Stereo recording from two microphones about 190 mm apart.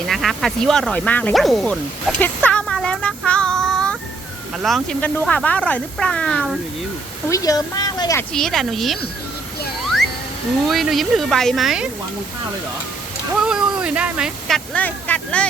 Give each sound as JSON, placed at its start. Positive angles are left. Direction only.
{"t": 0.1, "sound": "speech", "side_deg": 0}
{"t": 2.2, "sound": "child singing", "side_deg": 5}
{"t": 4.6, "sound": "speech", "side_deg": 0}
{"t": 7.3, "sound": "speech", "side_deg": 20}
{"t": 8.3, "sound": "speech", "side_deg": 0}
{"t": 10.7, "sound": "speech", "side_deg": 0}
{"t": 13.4, "sound": "speech", "side_deg": -5}